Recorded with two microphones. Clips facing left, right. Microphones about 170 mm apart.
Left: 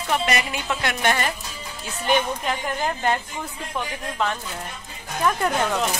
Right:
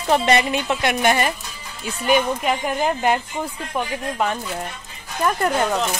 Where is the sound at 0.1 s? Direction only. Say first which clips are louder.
Right 6 dB; 30° right (ahead or behind).